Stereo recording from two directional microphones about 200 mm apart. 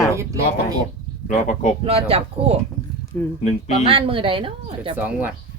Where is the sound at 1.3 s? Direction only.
40° left (ahead or behind).